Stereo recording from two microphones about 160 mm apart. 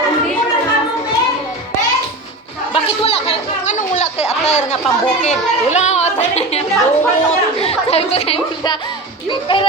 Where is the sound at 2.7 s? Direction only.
35° left (ahead or behind).